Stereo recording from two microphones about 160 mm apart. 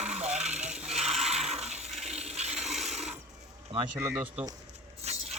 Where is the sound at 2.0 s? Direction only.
40° right (ahead or behind).